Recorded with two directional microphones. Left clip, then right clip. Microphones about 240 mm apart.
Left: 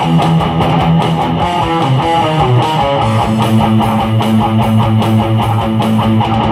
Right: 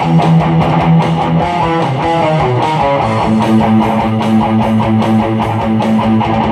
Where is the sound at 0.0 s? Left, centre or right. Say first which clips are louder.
Even; left.